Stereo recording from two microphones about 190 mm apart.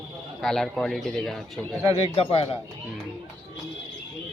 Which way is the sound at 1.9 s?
30° left (ahead or behind).